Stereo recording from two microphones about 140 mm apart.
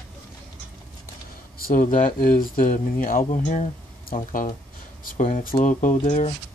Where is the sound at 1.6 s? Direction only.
80° left; by 6.3 s 60° left (ahead or behind).